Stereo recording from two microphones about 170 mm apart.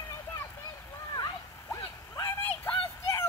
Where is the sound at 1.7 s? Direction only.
15° left (ahead or behind).